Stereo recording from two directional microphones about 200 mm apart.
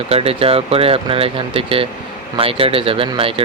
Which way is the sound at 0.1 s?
30° right (ahead or behind).